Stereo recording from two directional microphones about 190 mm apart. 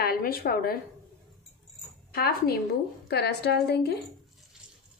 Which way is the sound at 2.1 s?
55° left (ahead or behind).